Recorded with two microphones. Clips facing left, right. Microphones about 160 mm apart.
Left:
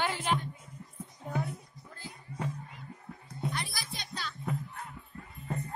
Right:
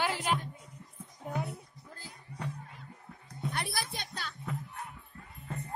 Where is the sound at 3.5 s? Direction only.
60° right (ahead or behind).